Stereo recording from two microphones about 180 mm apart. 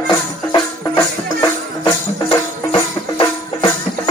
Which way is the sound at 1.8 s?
25° left (ahead or behind).